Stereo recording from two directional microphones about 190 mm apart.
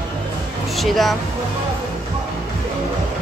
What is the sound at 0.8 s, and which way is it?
Speech, centre (ahead or behind).